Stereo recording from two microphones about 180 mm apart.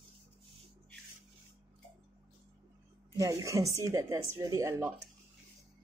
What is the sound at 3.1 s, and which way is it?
Speech, 20° right (ahead or behind).